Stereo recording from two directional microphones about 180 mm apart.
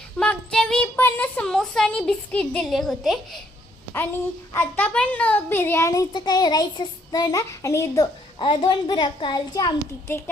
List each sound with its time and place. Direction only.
0.2 s a woman's voice: 5° left (ahead or behind)
4.5 s a child's voice: 10° left (ahead or behind)
8.4 s a child's voice: 25° left (ahead or behind)